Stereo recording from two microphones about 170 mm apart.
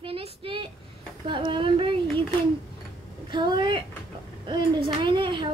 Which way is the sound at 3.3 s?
25° right (ahead or behind).